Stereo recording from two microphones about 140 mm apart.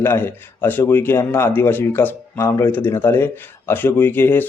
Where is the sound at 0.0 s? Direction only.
15° left (ahead or behind).